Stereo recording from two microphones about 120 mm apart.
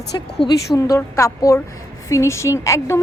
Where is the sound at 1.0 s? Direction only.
25° left (ahead or behind).